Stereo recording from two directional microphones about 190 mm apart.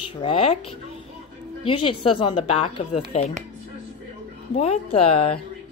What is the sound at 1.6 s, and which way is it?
A woman's voice, 30° left (ahead or behind).